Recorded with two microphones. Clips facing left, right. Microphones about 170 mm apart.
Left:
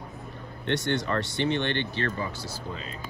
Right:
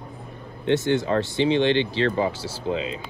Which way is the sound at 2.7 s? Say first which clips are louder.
Right 14 dB; 70° right (ahead or behind).